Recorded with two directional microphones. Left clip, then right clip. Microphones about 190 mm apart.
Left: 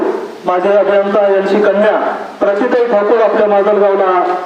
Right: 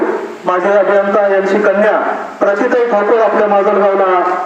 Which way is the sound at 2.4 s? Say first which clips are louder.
Even; 25° right (ahead or behind).